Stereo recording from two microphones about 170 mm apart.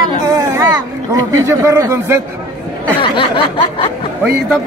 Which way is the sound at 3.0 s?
30° left (ahead or behind).